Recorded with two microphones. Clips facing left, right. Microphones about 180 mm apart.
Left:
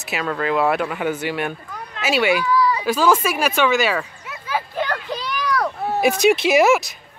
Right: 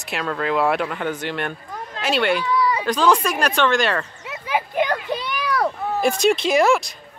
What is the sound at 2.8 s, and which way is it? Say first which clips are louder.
Speech: left 1 dB; 5° left (ahead or behind).